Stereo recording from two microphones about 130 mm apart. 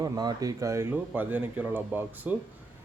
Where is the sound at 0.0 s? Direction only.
30° right (ahead or behind).